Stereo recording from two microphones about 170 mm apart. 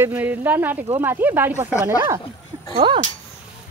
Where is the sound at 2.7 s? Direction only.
30° right (ahead or behind).